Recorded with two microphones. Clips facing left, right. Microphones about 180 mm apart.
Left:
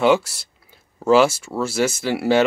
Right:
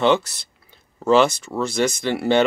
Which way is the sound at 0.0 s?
10° left (ahead or behind).